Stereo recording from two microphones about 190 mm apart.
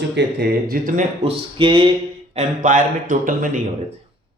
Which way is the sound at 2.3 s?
45° right (ahead or behind).